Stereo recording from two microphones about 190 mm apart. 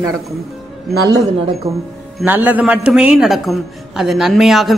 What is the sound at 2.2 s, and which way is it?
Speech, 10° right (ahead or behind).